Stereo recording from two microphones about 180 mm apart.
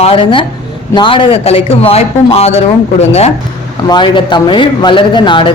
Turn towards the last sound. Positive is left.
turn(degrees=25)  # may be behind; listen again after turning